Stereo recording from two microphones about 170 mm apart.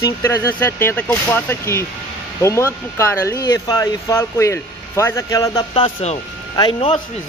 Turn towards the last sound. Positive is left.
turn(degrees=25)  # may be behind; listen again after turning